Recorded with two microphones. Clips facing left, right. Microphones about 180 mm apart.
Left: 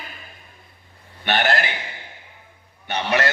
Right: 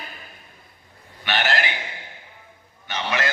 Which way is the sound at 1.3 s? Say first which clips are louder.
Left 3 dB; 45° left (ahead or behind).